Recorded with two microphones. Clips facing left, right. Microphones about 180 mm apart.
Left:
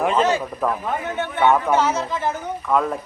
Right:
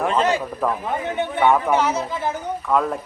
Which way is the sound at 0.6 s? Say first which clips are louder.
Even; centre (ahead or behind).